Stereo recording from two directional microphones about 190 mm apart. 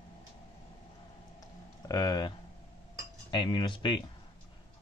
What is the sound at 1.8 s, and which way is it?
Cutlery, 20° left (ahead or behind).